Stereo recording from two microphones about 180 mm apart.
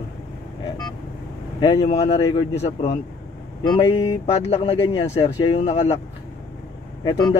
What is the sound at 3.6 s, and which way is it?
Speech, 25° left (ahead or behind).